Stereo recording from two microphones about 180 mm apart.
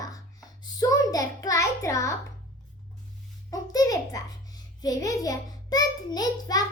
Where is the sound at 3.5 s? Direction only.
20° left (ahead or behind).